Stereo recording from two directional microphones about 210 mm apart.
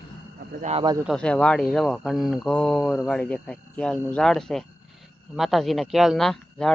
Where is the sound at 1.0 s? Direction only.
Centre (ahead or behind).